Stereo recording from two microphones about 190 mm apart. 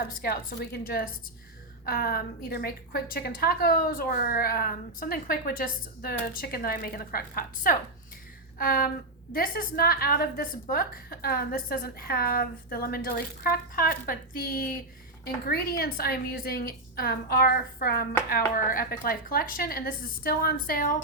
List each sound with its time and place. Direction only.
0.0 s a woman's voice: 50° left (ahead or behind)
15.8 s a woman's voice: 55° left (ahead or behind)